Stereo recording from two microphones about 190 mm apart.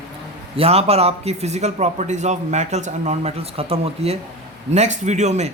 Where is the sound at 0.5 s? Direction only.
30° right (ahead or behind).